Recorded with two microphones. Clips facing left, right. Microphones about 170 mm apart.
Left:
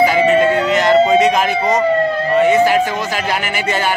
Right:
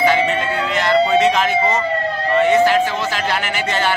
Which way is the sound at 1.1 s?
10° left (ahead or behind).